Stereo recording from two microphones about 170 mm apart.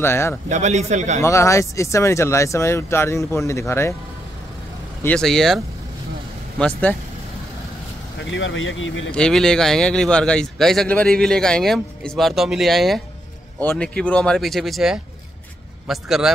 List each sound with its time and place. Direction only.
0.0 s speech: 15° left (ahead or behind)
0.5 s a man's voice: 40° right (ahead or behind)
1.2 s speech: 15° left (ahead or behind)
5.0 s speech: 5° left (ahead or behind)
6.6 s speech: 10° left (ahead or behind)
8.3 s speech: 90° left
9.1 s speech: 5° left (ahead or behind)